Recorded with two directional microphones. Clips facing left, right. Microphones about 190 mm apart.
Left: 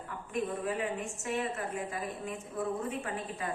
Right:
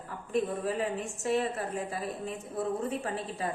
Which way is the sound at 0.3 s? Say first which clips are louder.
Right 3 dB; 35° right (ahead or behind).